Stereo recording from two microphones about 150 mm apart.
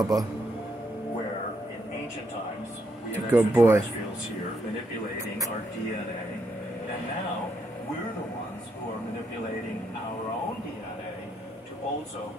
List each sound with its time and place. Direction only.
0.0 s speech: 25° right (ahead or behind)
3.3 s speech: 15° right (ahead or behind)